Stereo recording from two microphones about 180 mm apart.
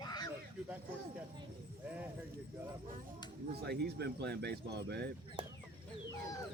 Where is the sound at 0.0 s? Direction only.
25° left (ahead or behind).